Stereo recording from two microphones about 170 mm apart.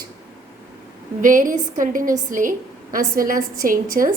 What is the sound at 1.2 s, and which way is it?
A woman's voice, 50° right (ahead or behind).